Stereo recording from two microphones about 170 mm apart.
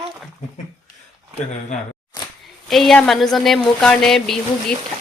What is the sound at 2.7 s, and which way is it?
Speech, centre (ahead or behind).